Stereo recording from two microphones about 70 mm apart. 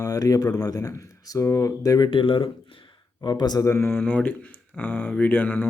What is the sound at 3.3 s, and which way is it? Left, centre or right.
Speech, left.